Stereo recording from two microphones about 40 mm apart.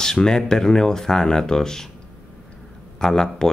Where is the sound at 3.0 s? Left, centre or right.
Centre.